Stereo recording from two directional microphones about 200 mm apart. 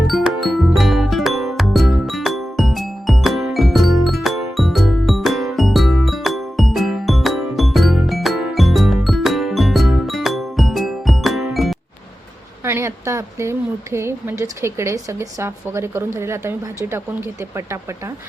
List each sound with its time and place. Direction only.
0.1 s music: centre (ahead or behind)
12.6 s speech: 15° right (ahead or behind)